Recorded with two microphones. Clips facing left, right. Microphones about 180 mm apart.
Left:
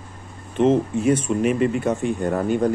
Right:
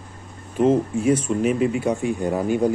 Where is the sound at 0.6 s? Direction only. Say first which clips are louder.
Even; 10° right (ahead or behind).